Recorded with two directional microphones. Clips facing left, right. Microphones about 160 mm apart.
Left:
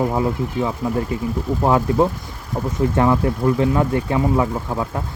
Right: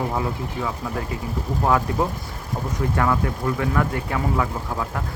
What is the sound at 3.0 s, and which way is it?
Speech, 25° left (ahead or behind).